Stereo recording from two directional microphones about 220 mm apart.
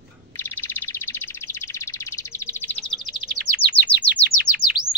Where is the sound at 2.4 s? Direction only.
5° left (ahead or behind).